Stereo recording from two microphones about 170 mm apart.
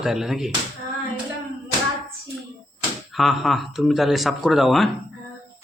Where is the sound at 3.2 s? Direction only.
Centre (ahead or behind).